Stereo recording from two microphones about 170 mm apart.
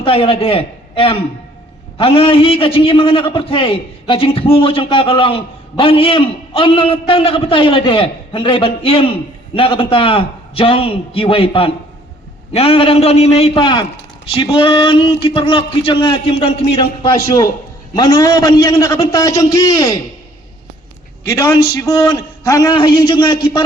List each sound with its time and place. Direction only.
0.0 s a man's voice: 35° left (ahead or behind)
17.9 s a man's voice: 25° left (ahead or behind)
21.2 s a man's voice: 20° left (ahead or behind)